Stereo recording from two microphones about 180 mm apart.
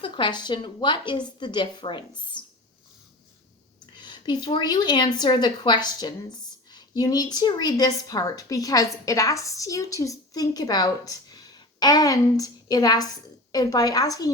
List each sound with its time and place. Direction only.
0.0 s a woman's voice: 25° left (ahead or behind)
3.9 s a woman's voice: 25° left (ahead or behind)
6.7 s a sound: 20° left (ahead or behind)
7.3 s a woman's voice: 25° left (ahead or behind)